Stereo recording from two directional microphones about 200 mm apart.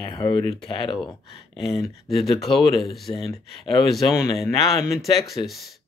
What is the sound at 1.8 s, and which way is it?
Speech, centre (ahead or behind).